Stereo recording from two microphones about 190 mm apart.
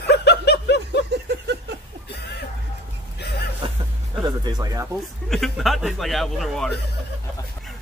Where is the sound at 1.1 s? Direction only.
60° right (ahead or behind).